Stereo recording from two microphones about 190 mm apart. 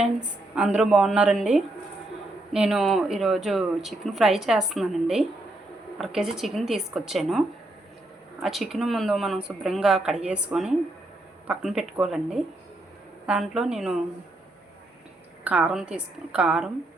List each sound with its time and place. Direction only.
0.0 s speech: 5° right (ahead or behind)
15.4 s speech: 5° right (ahead or behind)